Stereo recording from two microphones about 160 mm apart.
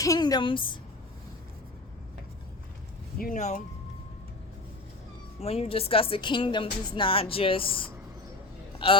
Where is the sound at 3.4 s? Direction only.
45° left (ahead or behind).